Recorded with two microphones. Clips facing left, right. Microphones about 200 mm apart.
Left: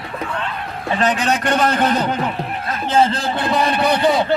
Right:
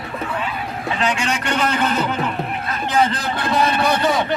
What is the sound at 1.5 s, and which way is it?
A man's voice, 40° left (ahead or behind).